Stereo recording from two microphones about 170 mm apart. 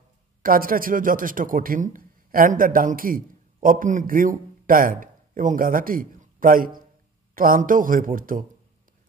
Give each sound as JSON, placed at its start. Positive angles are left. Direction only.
{"t": 0.4, "sound": "speech", "side_deg": -55}